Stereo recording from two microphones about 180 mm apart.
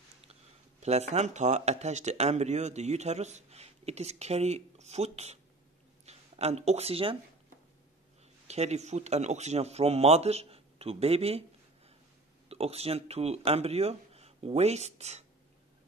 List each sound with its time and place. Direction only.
0.3 s speech: 35° right (ahead or behind)
8.5 s speech: 40° right (ahead or behind)
12.4 s speech: 35° right (ahead or behind)